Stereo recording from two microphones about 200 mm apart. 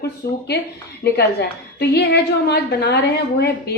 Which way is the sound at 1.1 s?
55° left (ahead or behind).